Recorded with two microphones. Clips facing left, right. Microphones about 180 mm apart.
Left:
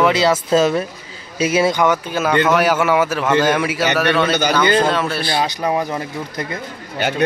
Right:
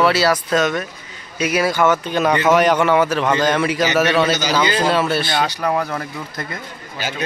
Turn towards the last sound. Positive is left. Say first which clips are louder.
# left 7 dB
turn(degrees=60)  # may be behind; listen again after turning